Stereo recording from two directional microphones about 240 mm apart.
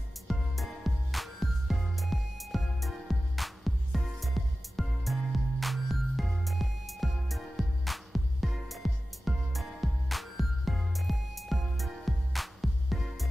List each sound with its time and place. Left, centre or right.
0.3 s music: centre